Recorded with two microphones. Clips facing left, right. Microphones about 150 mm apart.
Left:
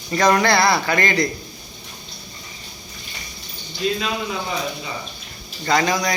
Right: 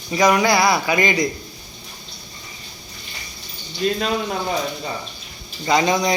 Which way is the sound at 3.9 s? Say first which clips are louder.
Right 3 dB; 45° right (ahead or behind).